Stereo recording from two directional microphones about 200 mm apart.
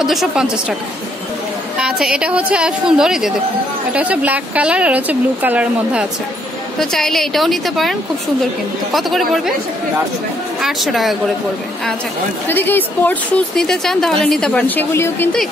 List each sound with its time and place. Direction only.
0.0 s a woman's voice: centre (ahead or behind)
1.8 s a woman's voice: 5° right (ahead or behind)
10.6 s a woman's voice: centre (ahead or behind)
12.4 s speech: 10° left (ahead or behind)